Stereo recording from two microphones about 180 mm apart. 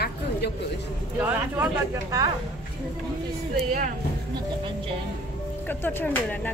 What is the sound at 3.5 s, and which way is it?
Speech, 40° right (ahead or behind).